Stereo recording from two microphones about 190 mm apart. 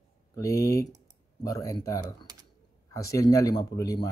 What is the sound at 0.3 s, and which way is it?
Speech, 15° left (ahead or behind).